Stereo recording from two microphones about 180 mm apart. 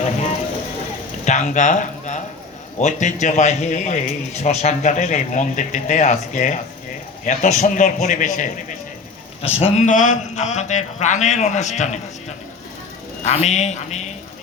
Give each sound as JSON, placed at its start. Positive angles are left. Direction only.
{"t": 0.0, "sound": "a man's voice", "side_deg": 40}
{"t": 9.4, "sound": "a man's voice", "side_deg": 35}
{"t": 13.2, "sound": "a man's voice", "side_deg": 40}